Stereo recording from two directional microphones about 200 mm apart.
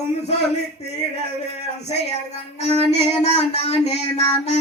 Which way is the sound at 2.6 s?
30° left (ahead or behind).